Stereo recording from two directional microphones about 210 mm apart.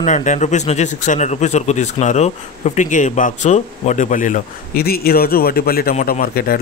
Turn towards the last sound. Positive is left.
turn(degrees=45)  # may be behind; listen again after turning